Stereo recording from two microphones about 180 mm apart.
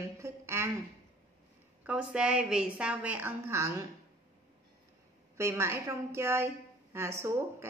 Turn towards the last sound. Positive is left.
turn(degrees=-15)  # may be behind; listen again after turning